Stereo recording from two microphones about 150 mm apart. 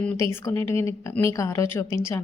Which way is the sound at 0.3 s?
20° left (ahead or behind).